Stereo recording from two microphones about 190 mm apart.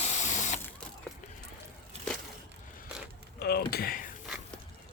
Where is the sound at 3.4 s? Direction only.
55° left (ahead or behind).